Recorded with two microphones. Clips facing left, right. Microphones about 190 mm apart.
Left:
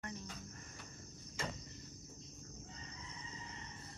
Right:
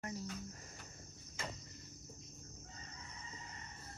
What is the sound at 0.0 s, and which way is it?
Cricket, 35° right (ahead or behind).